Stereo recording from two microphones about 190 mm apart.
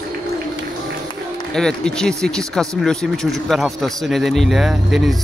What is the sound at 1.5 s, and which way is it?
Speech, 5° left (ahead or behind).